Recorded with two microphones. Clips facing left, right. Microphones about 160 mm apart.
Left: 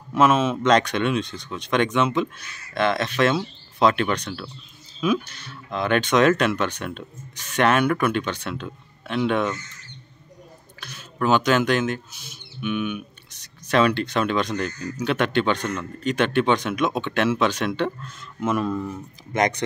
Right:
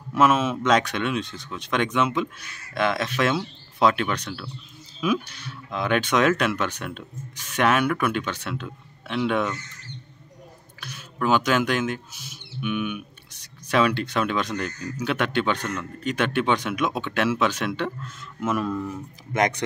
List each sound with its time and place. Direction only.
0.1 s speech: 5° right (ahead or behind)
10.8 s speech: 5° right (ahead or behind)
18.7 s speech: 15° left (ahead or behind)
19.3 s speech: 5° right (ahead or behind)